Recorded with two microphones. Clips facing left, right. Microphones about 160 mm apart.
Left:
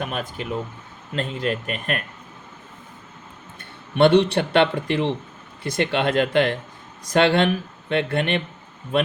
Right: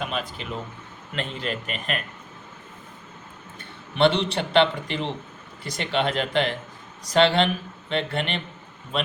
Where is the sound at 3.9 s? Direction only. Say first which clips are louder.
Left 5 dB; 55° left (ahead or behind).